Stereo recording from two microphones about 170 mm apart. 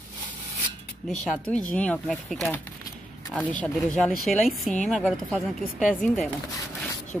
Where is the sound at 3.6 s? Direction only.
5° left (ahead or behind).